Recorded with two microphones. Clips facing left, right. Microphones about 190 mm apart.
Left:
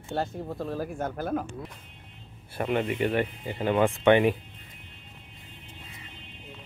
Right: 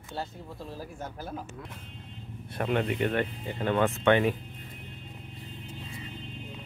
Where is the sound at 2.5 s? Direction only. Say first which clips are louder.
Left 1 dB; 5° left (ahead or behind).